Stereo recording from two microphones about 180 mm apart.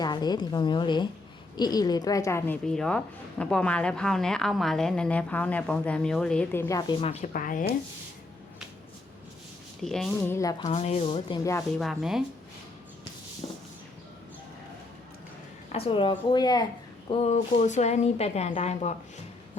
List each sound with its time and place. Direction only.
0.0 s a woman's voice: 25° left (ahead or behind)
2.6 s speech: 5° left (ahead or behind); by 7.3 s 35° left (ahead or behind)
7.3 s speech: 50° left (ahead or behind)
9.8 s speech: centre (ahead or behind)
10.3 s a woman's voice: 20° left (ahead or behind)
10.7 s a woman's voice: 35° left (ahead or behind)
11.8 s speech: centre (ahead or behind)
13.4 s speech: 30° left (ahead or behind)
15.7 s a woman's voice: 30° left (ahead or behind)
17.1 s a woman's voice: 40° left (ahead or behind)